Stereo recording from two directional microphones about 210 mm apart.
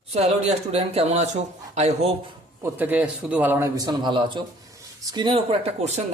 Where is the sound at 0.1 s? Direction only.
30° right (ahead or behind).